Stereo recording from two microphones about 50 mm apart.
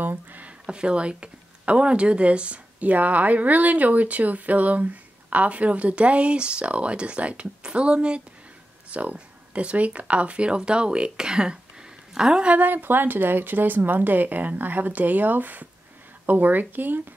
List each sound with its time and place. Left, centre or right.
0.0 s speech: right
0.7 s speech: right
12.5 s speech: right